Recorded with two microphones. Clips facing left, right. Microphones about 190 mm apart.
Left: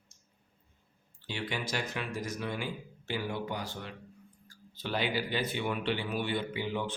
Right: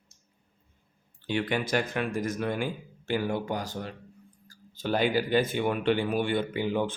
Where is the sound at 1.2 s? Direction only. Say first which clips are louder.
Right 8 dB; 55° right (ahead or behind).